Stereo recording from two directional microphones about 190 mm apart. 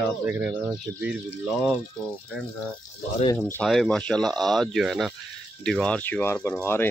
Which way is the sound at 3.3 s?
10° left (ahead or behind).